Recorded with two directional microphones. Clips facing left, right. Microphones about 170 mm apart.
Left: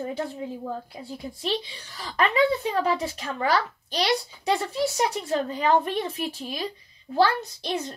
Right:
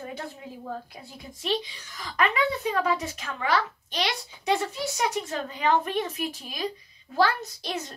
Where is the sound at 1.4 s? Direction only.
35° left (ahead or behind).